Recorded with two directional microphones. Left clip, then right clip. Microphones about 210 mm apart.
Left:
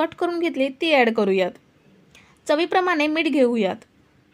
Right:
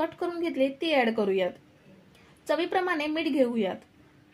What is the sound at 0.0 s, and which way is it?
Speech, 40° left (ahead or behind).